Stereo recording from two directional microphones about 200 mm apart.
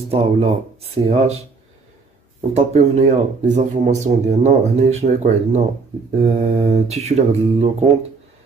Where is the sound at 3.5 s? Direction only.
35° right (ahead or behind).